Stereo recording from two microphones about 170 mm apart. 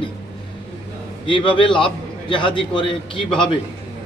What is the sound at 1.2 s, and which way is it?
A man's voice, 30° left (ahead or behind).